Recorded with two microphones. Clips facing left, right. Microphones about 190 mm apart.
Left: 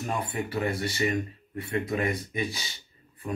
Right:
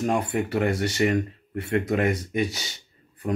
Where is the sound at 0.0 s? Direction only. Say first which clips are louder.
Right 7 dB; 70° right (ahead or behind).